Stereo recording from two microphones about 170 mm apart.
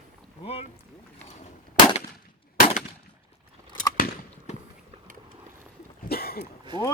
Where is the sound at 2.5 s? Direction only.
55° left (ahead or behind).